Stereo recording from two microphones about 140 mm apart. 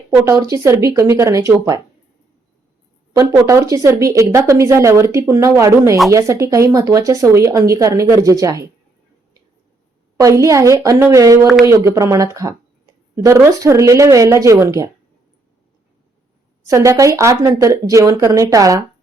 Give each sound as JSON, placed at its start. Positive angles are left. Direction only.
{"t": 0.1, "sound": "speech", "side_deg": -20}
{"t": 3.1, "sound": "speech", "side_deg": -25}
{"t": 10.2, "sound": "speech", "side_deg": -25}
{"t": 16.6, "sound": "speech", "side_deg": -20}